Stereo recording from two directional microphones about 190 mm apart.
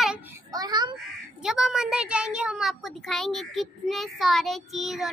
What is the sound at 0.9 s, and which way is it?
Speech, 5° right (ahead or behind).